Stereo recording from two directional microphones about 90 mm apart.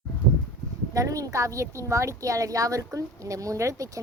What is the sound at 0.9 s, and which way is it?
Speech, 35° right (ahead or behind).